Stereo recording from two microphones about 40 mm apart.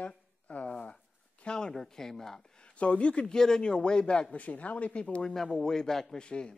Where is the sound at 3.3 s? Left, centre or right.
Centre.